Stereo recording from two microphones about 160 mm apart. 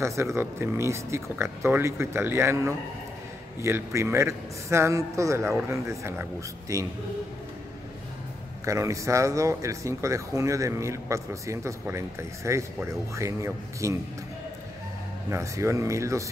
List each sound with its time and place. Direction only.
0.0 s speech: 15° right (ahead or behind)
8.6 s speech: 20° right (ahead or behind)
15.2 s speech: 15° right (ahead or behind)